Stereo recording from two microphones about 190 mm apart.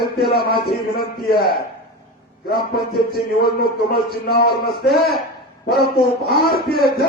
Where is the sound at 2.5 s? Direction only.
50° left (ahead or behind).